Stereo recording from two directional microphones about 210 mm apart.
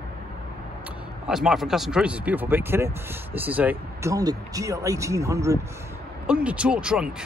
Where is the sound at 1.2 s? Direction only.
Centre (ahead or behind).